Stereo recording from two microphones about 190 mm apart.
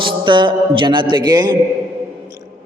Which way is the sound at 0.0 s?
25° right (ahead or behind).